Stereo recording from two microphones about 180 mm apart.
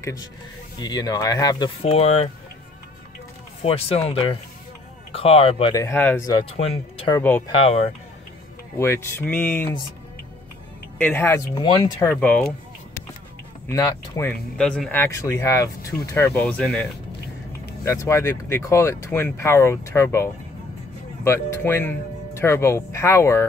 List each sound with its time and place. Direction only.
0.0 s speech: 20° left (ahead or behind)
1.8 s speech: 35° left (ahead or behind)
3.6 s speech: 35° left (ahead or behind)
5.8 s speech: 15° left (ahead or behind)
6.5 s speech: 35° left (ahead or behind)
7.1 s speech: 10° left (ahead or behind)
7.4 s speech: 35° left (ahead or behind)
8.7 s speech: 15° left (ahead or behind)
11.0 s speech: 10° left (ahead or behind)
11.5 s speech: 25° left (ahead or behind)
12.1 s speech: 10° left (ahead or behind)
13.7 s speech: 15° left (ahead or behind)
14.3 s speech: 5° left (ahead or behind)
17.8 s speech: 15° left (ahead or behind)